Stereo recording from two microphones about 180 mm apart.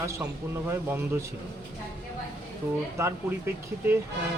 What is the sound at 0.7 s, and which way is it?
Speech, 10° right (ahead or behind).